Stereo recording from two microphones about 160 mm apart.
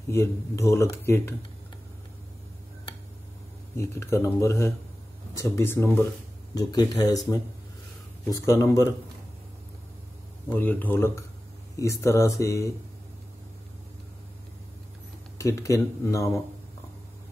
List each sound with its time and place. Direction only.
0.1 s speech: 15° left (ahead or behind)
3.7 s speech: 15° left (ahead or behind)
10.5 s speech: 10° left (ahead or behind)
15.3 s speech: 20° left (ahead or behind)